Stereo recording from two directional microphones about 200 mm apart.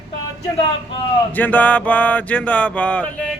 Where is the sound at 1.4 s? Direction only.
10° left (ahead or behind).